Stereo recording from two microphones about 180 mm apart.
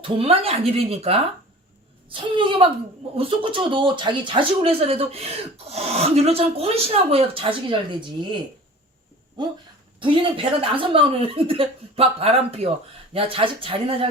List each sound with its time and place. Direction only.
0.0 s a woman's voice: 35° right (ahead or behind)
10.0 s speech: 30° right (ahead or behind)